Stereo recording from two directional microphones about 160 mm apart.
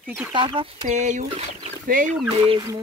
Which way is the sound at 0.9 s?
50° right (ahead or behind).